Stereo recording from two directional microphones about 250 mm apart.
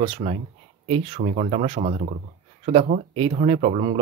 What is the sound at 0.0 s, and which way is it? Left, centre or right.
Speech, right.